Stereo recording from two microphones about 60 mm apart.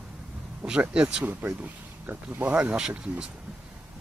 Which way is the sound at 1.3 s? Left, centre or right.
Right.